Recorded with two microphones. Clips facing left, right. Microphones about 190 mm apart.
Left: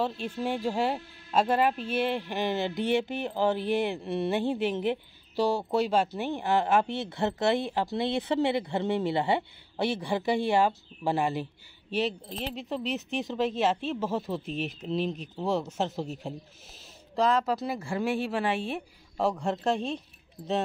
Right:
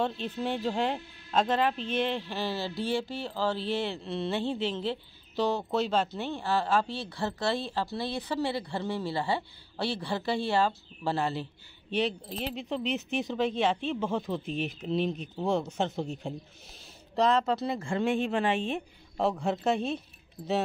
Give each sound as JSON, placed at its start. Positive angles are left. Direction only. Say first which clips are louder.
{"t": 0.0, "sound": "speech", "louder": "left 1 dB", "side_deg": 10}
{"t": 11.9, "sound": "speech", "louder": "even", "side_deg": 0}
{"t": 19.1, "sound": "speech", "louder": "even", "side_deg": 0}